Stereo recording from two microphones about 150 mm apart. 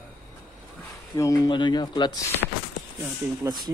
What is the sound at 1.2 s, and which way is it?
Speech, 25° left (ahead or behind).